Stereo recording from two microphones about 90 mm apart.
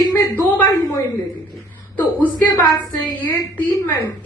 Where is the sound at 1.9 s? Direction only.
20° left (ahead or behind).